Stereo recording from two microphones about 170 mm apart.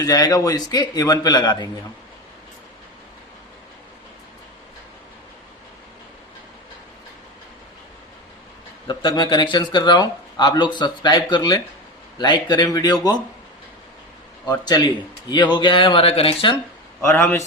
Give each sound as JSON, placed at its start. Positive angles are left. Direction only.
{"t": 0.0, "sound": "speech", "side_deg": 20}
{"t": 8.9, "sound": "speech", "side_deg": 30}
{"t": 14.4, "sound": "speech", "side_deg": 20}
{"t": 17.0, "sound": "a man's voice", "side_deg": 15}